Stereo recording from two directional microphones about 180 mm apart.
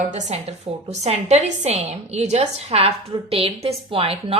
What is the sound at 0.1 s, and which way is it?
A woman's voice, 40° right (ahead or behind).